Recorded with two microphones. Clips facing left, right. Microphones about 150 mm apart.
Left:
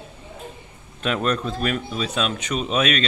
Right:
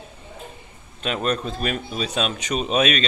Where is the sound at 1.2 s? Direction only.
25° right (ahead or behind).